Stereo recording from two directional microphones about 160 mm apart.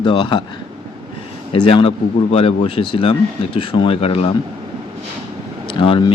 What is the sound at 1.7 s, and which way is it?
Speech, 35° left (ahead or behind).